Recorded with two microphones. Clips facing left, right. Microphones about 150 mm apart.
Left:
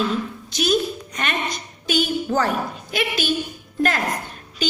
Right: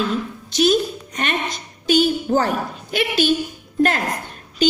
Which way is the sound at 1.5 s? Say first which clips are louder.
Right 5 dB; 45° left (ahead or behind).